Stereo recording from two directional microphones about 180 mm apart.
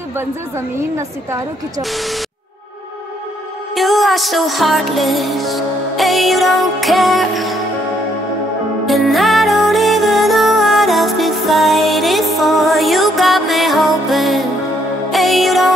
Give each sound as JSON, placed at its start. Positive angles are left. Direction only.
{"t": 0.2, "sound": "a woman's voice", "side_deg": -15}
{"t": 1.8, "sound": "music", "side_deg": 0}
{"t": 3.7, "sound": "music", "side_deg": 0}
{"t": 8.8, "sound": "music", "side_deg": 0}